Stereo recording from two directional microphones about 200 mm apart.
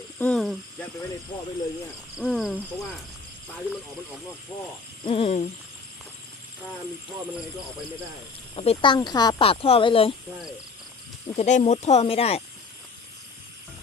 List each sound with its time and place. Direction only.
0.2 s cricket: 5° left (ahead or behind)
2.1 s speech: centre (ahead or behind)
5.0 s speech: 25° left (ahead or behind)
8.5 s speech: 30° left (ahead or behind)
11.3 s speech: 35° left (ahead or behind)